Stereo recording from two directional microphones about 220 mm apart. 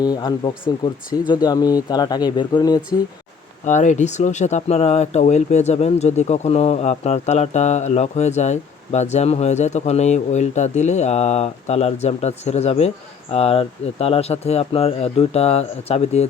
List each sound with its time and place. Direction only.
0.0 s speech: 20° left (ahead or behind)
3.7 s speech: 35° left (ahead or behind)